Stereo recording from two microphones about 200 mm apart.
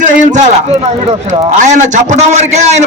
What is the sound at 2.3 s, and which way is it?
Speech, 35° right (ahead or behind).